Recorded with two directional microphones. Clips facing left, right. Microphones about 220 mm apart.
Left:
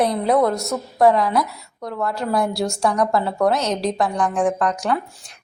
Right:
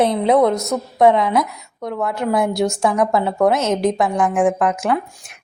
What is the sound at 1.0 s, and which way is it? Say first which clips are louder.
A woman's voice: right 2 dB; 20° right (ahead or behind).